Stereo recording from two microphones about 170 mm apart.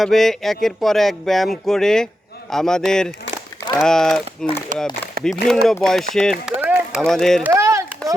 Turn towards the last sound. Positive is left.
turn(degrees=-15)  # may be behind; listen again after turning